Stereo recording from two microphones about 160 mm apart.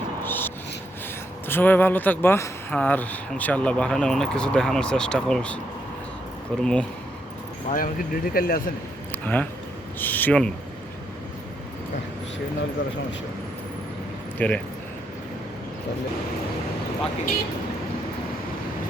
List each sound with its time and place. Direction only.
0.3 s music: 10° left (ahead or behind)
1.5 s speech: 10° left (ahead or behind)
6.6 s speech: 5° left (ahead or behind)
7.7 s speech: 60° left (ahead or behind)
9.1 s speech: 10° left (ahead or behind)
14.3 s speech: 10° left (ahead or behind)